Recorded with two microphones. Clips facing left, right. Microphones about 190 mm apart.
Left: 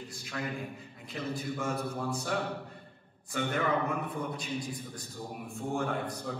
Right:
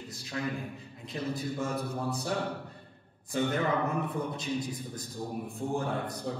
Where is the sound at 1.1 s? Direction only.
30° right (ahead or behind).